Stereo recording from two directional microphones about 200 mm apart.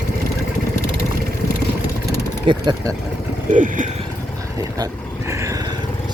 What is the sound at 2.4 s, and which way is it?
Speech, 20° right (ahead or behind).